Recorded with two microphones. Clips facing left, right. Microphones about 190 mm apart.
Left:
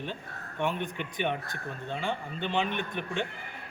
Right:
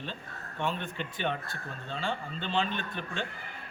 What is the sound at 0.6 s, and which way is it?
A man's voice, 15° left (ahead or behind).